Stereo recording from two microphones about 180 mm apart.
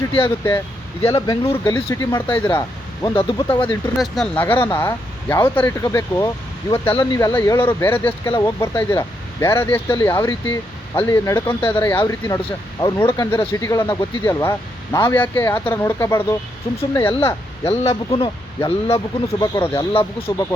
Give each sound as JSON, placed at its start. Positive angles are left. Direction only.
{"t": 1.1, "sound": "speech", "side_deg": 20}
{"t": 3.9, "sound": "speech", "side_deg": 0}
{"t": 17.7, "sound": "speech", "side_deg": 30}